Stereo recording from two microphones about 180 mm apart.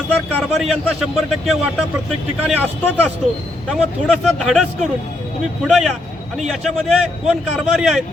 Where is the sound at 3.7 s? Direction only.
Centre (ahead or behind).